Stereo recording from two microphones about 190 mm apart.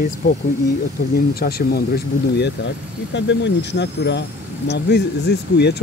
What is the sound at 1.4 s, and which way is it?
Speech, 50° left (ahead or behind).